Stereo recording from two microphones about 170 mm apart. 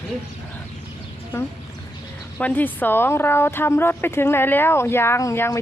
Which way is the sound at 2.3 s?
10° left (ahead or behind).